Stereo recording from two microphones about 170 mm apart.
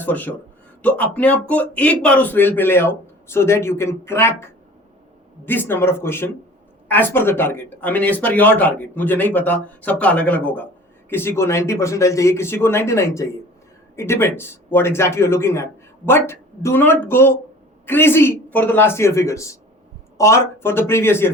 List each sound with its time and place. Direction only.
0.0 s a man's voice: 10° left (ahead or behind)